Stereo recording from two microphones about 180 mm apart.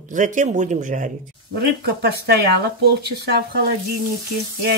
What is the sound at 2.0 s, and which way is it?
Speech, 65° right (ahead or behind).